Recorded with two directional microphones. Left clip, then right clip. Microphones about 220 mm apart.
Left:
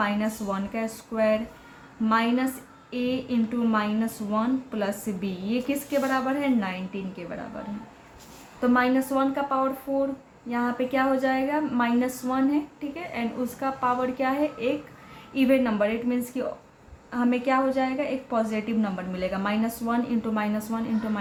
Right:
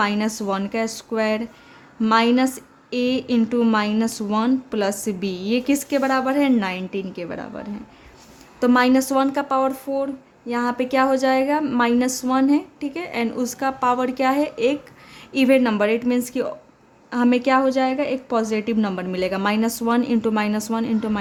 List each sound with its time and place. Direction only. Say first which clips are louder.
0.0 s a woman's voice: right 5 dB; 50° right (ahead or behind)
8.6 s a woman's voice: right 6 dB; 50° right (ahead or behind)